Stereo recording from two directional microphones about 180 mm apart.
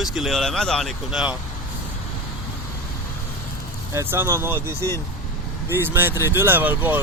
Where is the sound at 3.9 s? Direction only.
15° right (ahead or behind).